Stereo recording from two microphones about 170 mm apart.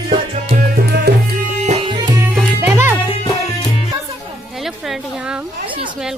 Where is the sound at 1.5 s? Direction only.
45° right (ahead or behind).